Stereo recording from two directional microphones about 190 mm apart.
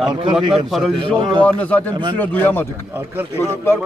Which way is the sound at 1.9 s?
25° right (ahead or behind).